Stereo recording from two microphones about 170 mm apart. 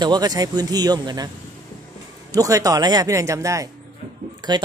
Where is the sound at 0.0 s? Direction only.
25° right (ahead or behind).